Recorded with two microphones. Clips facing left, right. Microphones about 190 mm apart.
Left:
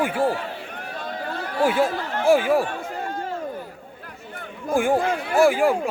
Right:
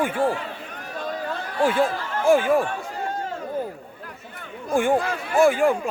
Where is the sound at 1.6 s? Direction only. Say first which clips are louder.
Even; 10° left (ahead or behind).